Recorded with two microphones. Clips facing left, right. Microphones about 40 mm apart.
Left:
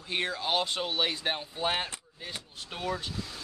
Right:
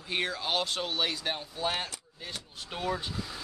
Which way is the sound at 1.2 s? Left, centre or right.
Left.